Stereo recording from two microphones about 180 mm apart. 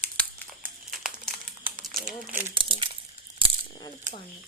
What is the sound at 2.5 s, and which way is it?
Crumpling, 30° right (ahead or behind).